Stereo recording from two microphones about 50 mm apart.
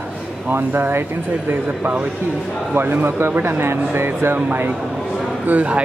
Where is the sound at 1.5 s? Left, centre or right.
Right.